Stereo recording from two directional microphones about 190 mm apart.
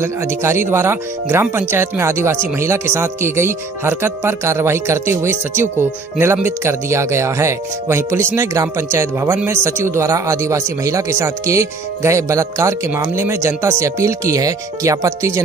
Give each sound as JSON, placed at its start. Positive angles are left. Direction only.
{"t": 0.0, "sound": "speech", "side_deg": -15}